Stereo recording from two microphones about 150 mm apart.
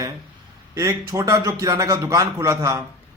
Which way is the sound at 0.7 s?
20° right (ahead or behind).